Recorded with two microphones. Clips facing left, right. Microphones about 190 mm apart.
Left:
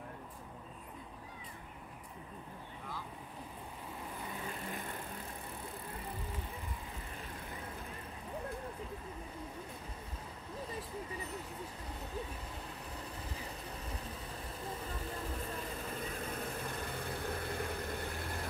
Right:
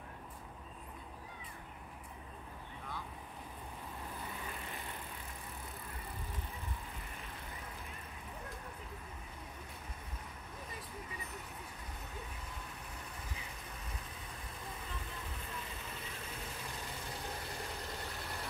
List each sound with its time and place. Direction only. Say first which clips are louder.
14.9 s vehicle: left 6 dB; 40° left (ahead or behind)